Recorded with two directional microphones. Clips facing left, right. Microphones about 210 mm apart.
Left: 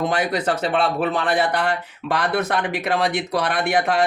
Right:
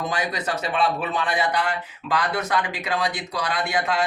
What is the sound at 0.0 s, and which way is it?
Speech, 55° left (ahead or behind).